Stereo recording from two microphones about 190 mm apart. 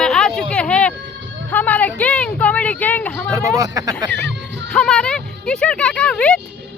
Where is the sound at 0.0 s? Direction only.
5° left (ahead or behind).